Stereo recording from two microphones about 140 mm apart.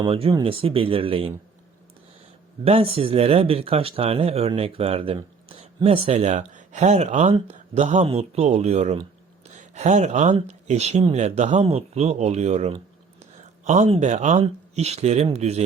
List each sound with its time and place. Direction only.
0.0 s speech: 40° right (ahead or behind)
2.6 s speech: 45° right (ahead or behind)